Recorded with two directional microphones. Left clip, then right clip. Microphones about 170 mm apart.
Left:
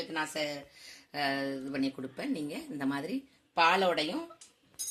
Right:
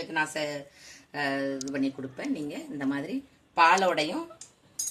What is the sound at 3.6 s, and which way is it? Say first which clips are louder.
Speech: right 5 dB; 35° left (ahead or behind).